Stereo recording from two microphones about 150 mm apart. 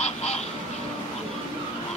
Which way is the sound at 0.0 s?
45° left (ahead or behind).